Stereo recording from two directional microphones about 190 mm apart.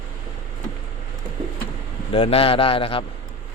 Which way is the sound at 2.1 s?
30° left (ahead or behind).